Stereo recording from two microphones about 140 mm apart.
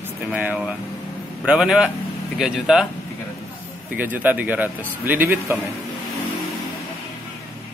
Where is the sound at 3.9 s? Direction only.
10° right (ahead or behind).